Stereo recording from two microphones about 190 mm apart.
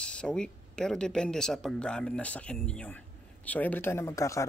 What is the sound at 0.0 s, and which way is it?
Speech, 5° left (ahead or behind).